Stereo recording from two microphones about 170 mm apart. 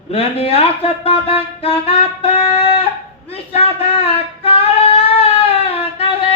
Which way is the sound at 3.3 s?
35° left (ahead or behind).